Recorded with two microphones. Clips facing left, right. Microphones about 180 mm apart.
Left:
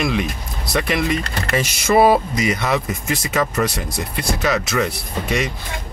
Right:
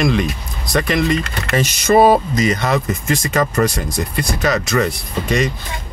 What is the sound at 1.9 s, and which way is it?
Speech, 45° right (ahead or behind).